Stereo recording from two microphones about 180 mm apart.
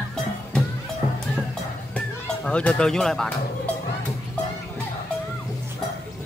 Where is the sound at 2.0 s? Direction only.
5° left (ahead or behind).